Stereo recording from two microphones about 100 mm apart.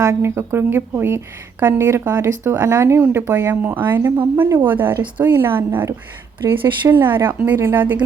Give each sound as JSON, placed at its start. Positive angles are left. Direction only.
{"t": 0.0, "sound": "a woman's voice", "side_deg": -25}